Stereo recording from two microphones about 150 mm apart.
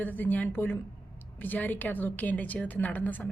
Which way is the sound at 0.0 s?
10° left (ahead or behind).